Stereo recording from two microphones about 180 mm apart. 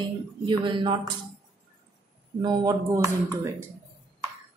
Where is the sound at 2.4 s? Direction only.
20° right (ahead or behind).